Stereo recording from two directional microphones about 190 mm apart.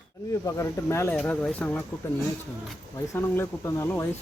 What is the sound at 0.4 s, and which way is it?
Speech, 15° left (ahead or behind).